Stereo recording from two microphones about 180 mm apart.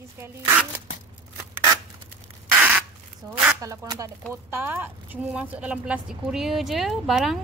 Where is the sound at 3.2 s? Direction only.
15° right (ahead or behind).